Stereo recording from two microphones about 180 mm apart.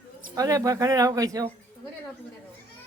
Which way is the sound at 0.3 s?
20° right (ahead or behind).